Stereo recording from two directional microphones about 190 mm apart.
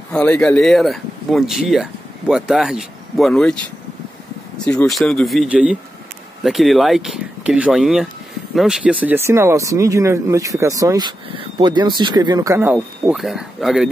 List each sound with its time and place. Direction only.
0.1 s speech: 5° left (ahead or behind)
4.6 s speech: 5° left (ahead or behind); by 13.1 s 15° right (ahead or behind)
13.1 s speech: centre (ahead or behind)